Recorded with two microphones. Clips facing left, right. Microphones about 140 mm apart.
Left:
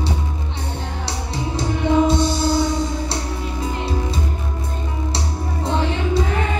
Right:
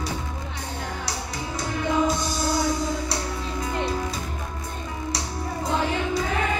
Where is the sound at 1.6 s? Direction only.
25° left (ahead or behind).